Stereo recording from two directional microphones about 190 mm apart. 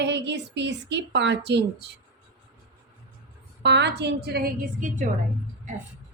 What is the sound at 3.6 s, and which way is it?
A woman's voice, 65° right (ahead or behind).